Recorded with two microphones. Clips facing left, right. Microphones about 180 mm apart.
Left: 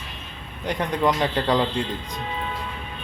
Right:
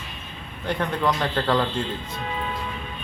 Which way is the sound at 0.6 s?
15° left (ahead or behind).